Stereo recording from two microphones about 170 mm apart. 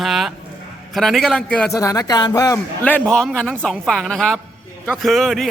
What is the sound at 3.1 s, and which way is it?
A man's voice, 5° left (ahead or behind).